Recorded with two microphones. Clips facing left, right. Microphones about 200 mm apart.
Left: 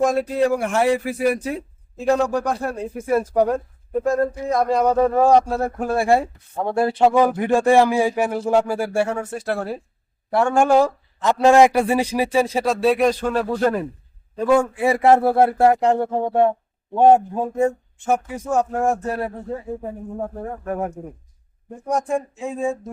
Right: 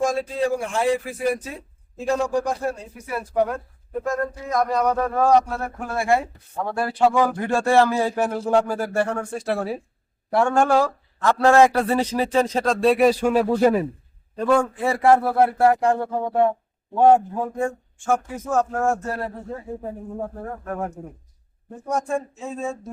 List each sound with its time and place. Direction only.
0.0 s speech: 60° left (ahead or behind); by 10.6 s 5° left (ahead or behind)
10.6 s speech: 20° left (ahead or behind); by 13.8 s 5° right (ahead or behind)
14.3 s speech: 5° left (ahead or behind)